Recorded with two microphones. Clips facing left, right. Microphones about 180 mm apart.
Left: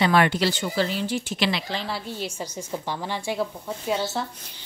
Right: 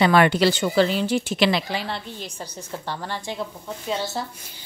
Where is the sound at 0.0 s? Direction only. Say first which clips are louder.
Right 3 dB; 60° right (ahead or behind).